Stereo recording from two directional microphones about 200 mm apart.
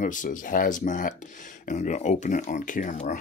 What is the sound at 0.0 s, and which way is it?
Speech, 40° left (ahead or behind).